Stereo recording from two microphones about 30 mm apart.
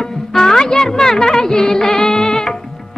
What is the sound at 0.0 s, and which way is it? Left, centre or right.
Music, centre.